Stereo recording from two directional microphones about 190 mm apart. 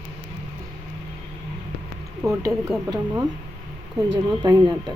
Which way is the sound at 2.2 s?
15° right (ahead or behind).